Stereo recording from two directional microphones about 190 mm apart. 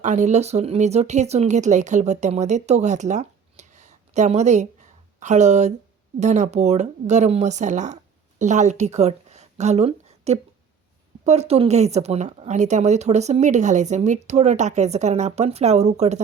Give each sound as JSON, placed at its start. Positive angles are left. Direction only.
{"t": 0.0, "sound": "a woman's voice", "side_deg": -40}